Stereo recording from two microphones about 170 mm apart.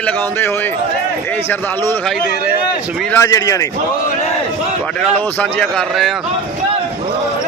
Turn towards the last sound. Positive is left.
turn(degrees=0)  # may be behind; listen again after turning